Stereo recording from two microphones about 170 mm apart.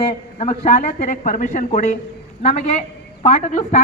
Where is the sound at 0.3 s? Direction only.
40° left (ahead or behind).